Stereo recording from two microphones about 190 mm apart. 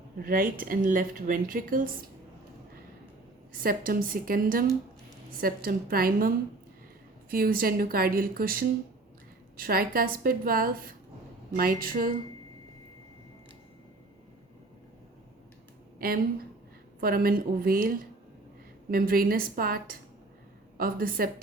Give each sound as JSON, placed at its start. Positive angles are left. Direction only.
{"t": 0.2, "sound": "a woman's voice", "side_deg": -50}
{"t": 3.6, "sound": "a woman's voice", "side_deg": -50}
{"t": 16.0, "sound": "a woman's voice", "side_deg": -50}